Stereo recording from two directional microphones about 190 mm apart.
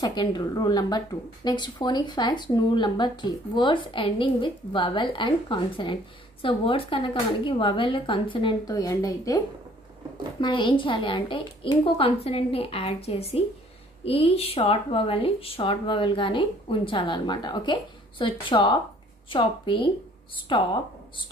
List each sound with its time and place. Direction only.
0.0 s speech: 20° left (ahead or behind)
10.4 s speech: 25° left (ahead or behind)